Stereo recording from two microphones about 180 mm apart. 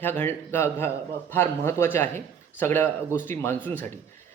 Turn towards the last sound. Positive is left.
turn(degrees=10)  # may be behind; listen again after turning